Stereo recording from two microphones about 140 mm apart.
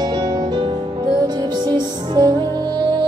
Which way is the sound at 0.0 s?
30° right (ahead or behind).